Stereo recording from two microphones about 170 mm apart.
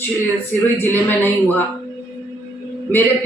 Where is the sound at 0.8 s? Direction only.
10° left (ahead or behind).